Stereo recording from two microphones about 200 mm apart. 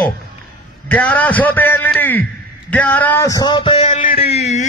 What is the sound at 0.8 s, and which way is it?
A man's voice, 5° left (ahead or behind).